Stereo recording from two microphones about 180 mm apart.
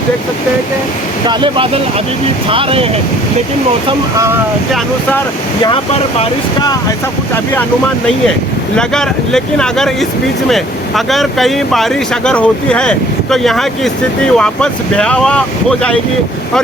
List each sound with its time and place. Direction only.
1.3 s speech: 25° right (ahead or behind)
5.6 s speech: 30° left (ahead or behind)
8.7 s speech: 5° left (ahead or behind)